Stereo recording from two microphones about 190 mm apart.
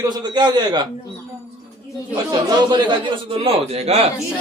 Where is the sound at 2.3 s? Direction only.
25° right (ahead or behind).